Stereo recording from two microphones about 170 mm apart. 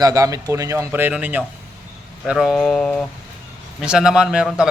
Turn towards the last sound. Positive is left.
turn(degrees=-5)  # may be behind; listen again after turning